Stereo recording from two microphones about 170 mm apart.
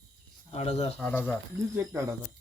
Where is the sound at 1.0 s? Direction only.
10° left (ahead or behind).